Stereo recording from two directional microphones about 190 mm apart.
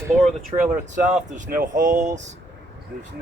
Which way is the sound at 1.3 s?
45° right (ahead or behind).